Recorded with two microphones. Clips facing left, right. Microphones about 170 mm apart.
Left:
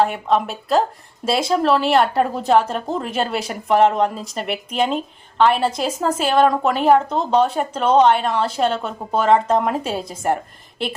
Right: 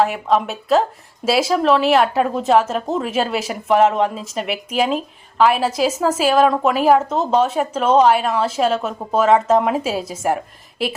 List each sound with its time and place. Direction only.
0.0 s a woman's voice: centre (ahead or behind)